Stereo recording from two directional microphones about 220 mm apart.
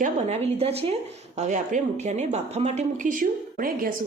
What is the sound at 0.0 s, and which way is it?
A woman's voice, 30° right (ahead or behind).